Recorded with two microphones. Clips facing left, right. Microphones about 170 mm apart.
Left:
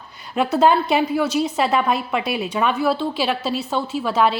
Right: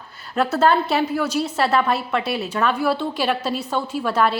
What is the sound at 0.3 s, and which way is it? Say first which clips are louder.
A woman's voice: left 1 dB; 15° left (ahead or behind).